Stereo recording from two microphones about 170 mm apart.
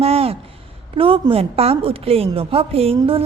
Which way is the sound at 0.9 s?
30° right (ahead or behind).